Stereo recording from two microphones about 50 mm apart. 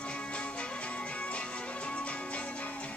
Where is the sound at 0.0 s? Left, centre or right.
Left.